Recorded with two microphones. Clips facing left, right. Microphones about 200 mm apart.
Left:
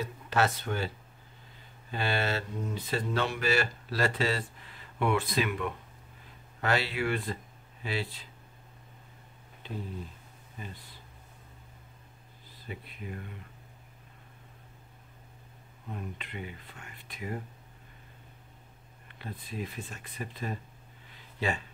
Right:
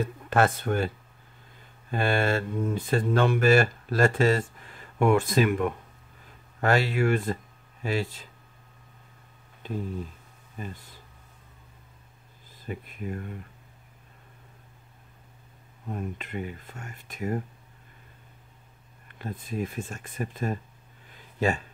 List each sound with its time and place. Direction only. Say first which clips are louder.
0.0 s speech: right 5 dB; 50° right (ahead or behind)
10.6 s speech: right 6 dB; 45° right (ahead or behind)
12.6 s speech: right 7 dB; 45° right (ahead or behind)
15.9 s speech: right 6 dB; 45° right (ahead or behind)
19.0 s speech: right 6 dB; 45° right (ahead or behind)
21.1 s a sound: right 6 dB; 45° right (ahead or behind)